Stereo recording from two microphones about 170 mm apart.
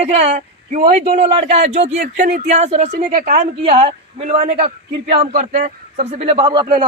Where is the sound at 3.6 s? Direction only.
35° right (ahead or behind).